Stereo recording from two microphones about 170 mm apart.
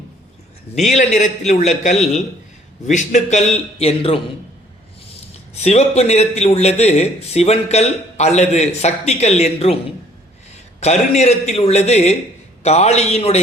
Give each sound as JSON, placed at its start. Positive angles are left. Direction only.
{"t": 0.8, "sound": "a man's voice", "side_deg": 45}
{"t": 5.6, "sound": "a man's voice", "side_deg": 40}
{"t": 10.8, "sound": "a man's voice", "side_deg": 40}